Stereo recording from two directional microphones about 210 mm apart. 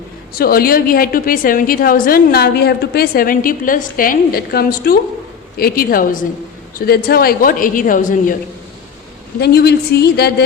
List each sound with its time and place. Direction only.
0.3 s a woman's voice: 45° left (ahead or behind)
9.4 s a woman's voice: 50° left (ahead or behind)